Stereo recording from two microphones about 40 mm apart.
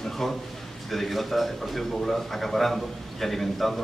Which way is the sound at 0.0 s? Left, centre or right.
Centre.